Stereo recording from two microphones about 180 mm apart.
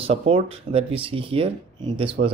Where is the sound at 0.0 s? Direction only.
35° right (ahead or behind).